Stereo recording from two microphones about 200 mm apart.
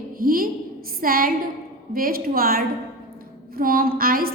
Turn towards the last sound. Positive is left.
turn(degrees=-45)  # may be behind; listen again after turning